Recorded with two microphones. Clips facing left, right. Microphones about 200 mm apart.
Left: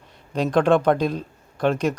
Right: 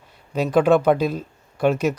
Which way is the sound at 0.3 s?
5° right (ahead or behind).